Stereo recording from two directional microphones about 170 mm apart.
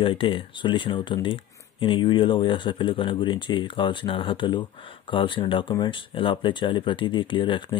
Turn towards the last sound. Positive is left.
turn(degrees=30)  # may be behind; listen again after turning